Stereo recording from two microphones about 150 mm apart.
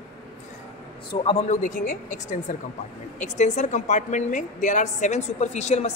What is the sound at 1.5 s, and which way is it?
Speech, 60° left (ahead or behind).